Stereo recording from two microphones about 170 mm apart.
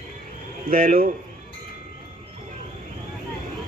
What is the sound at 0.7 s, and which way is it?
Speech, 55° right (ahead or behind).